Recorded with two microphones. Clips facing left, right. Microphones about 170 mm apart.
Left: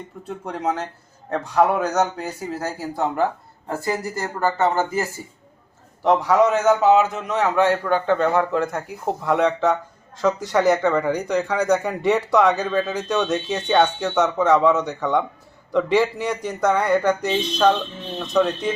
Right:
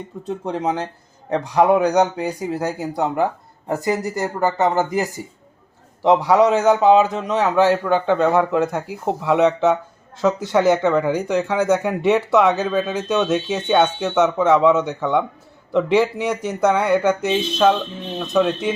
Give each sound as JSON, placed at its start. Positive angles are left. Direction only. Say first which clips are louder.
{"t": 0.3, "sound": "a man's voice", "louder": "right 3 dB", "side_deg": -20}
{"t": 7.0, "sound": "a man's voice", "louder": "right 2 dB", "side_deg": -30}
{"t": 12.5, "sound": "speech", "louder": "right 2 dB", "side_deg": -5}
{"t": 12.7, "sound": "a man's voice", "louder": "right 1 dB", "side_deg": -20}
{"t": 13.2, "sound": "speech", "louder": "right 3 dB", "side_deg": -5}
{"t": 14.2, "sound": "a man's voice", "louder": "right 2 dB", "side_deg": -20}
{"t": 14.8, "sound": "speech", "louder": "right 2 dB", "side_deg": -5}
{"t": 15.7, "sound": "a man's voice", "louder": "right 2 dB", "side_deg": -20}
{"t": 18.2, "sound": "speech", "louder": "right 1 dB", "side_deg": -5}